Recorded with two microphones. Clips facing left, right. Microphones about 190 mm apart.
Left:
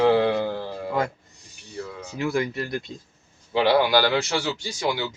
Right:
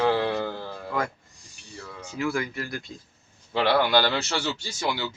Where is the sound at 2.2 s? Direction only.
20° left (ahead or behind).